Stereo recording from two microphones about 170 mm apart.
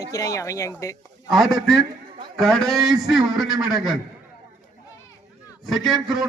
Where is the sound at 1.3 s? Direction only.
Centre (ahead or behind).